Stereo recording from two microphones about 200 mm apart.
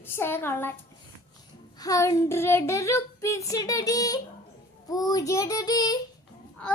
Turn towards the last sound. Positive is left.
turn(degrees=20)  # may be behind; listen again after turning